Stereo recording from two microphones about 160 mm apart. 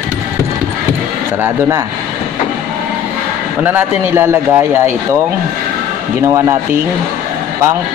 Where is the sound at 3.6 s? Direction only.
15° right (ahead or behind).